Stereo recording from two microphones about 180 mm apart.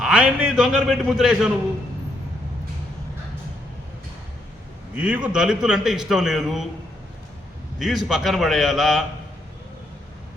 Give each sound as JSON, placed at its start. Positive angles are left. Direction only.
{"t": 0.0, "sound": "a man's voice", "side_deg": -5}
{"t": 4.9, "sound": "a man's voice", "side_deg": -10}
{"t": 7.8, "sound": "a man's voice", "side_deg": 0}